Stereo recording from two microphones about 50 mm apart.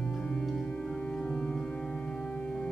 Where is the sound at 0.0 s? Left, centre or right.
Centre.